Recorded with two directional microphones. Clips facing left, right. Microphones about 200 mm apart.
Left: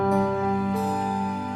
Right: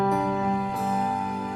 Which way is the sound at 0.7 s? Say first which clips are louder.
Left 2 dB; centre (ahead or behind).